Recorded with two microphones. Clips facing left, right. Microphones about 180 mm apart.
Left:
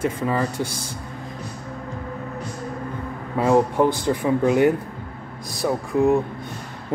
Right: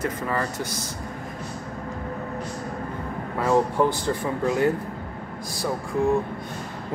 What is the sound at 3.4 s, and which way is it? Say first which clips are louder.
Speech: left 3 dB; 15° left (ahead or behind).